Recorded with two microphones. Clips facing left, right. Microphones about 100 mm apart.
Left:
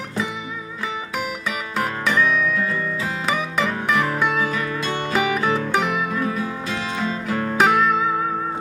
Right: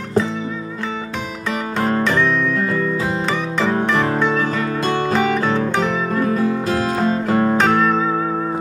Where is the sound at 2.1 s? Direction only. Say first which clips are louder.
Right 2 dB; 5° left (ahead or behind).